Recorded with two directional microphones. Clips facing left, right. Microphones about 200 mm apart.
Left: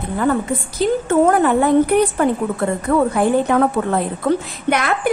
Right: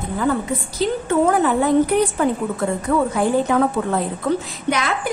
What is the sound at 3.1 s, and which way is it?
A woman's voice, 55° left (ahead or behind).